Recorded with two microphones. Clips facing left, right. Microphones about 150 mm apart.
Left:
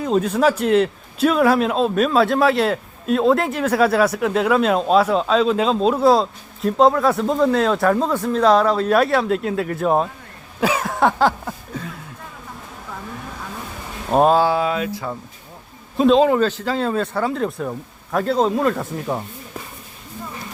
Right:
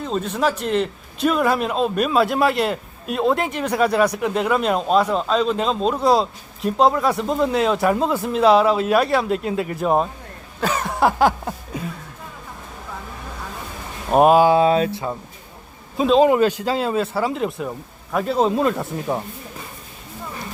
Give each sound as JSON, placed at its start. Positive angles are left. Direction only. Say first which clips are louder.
{"t": 0.0, "sound": "a man's voice", "louder": "left 4 dB", "side_deg": 10}
{"t": 11.2, "sound": "a sound", "louder": "right 1 dB", "side_deg": -15}
{"t": 14.1, "sound": "a sound", "louder": "right 2 dB", "side_deg": -10}
{"t": 16.0, "sound": "speech", "louder": "even", "side_deg": 0}
{"t": 18.3, "sound": "speech", "louder": "even", "side_deg": -20}
{"t": 18.8, "sound": "speech", "louder": "even", "side_deg": -5}